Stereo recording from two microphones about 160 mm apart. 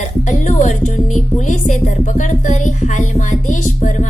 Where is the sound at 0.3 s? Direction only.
50° left (ahead or behind).